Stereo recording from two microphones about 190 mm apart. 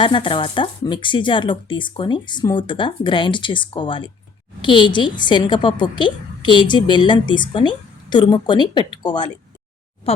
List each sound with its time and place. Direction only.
0.0 s a woman's voice: 25° left (ahead or behind)